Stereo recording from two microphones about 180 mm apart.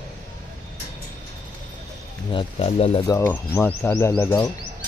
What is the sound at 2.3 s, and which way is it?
Speech, 35° left (ahead or behind).